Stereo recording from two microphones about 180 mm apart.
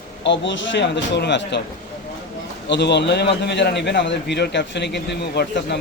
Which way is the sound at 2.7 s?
70° left (ahead or behind).